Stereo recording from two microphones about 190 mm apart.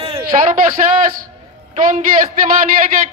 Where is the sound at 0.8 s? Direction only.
40° right (ahead or behind).